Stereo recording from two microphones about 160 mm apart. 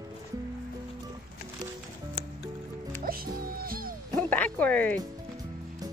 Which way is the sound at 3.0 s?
65° right (ahead or behind).